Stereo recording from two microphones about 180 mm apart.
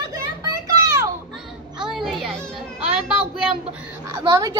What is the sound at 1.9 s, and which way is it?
Baby cry, centre (ahead or behind).